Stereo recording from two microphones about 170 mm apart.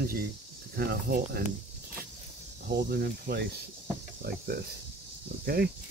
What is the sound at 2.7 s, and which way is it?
Cricket, 65° right (ahead or behind).